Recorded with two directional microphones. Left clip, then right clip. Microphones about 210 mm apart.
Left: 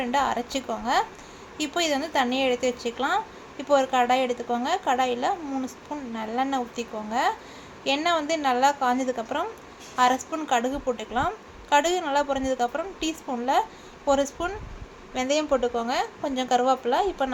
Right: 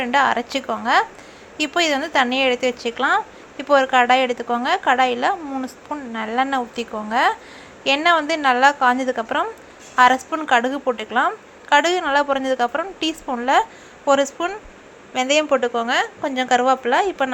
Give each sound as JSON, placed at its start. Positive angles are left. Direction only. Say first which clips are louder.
{"t": 0.0, "sound": "speech", "louder": "right 7 dB", "side_deg": -15}